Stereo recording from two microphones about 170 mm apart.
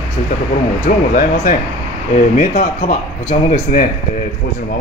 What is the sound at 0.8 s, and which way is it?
Speech, 50° left (ahead or behind).